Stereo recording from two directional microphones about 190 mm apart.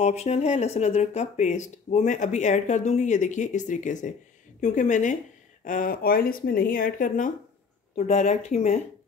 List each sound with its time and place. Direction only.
0.0 s speech: 35° left (ahead or behind)